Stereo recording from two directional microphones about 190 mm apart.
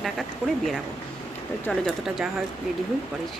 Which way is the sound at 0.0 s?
Centre (ahead or behind).